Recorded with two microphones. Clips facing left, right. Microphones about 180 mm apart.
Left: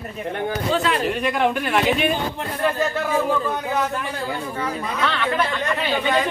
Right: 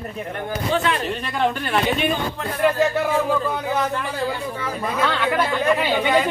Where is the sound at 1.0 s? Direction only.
10° left (ahead or behind).